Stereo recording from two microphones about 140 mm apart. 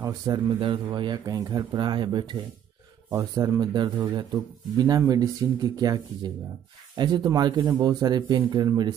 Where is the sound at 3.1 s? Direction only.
20° right (ahead or behind).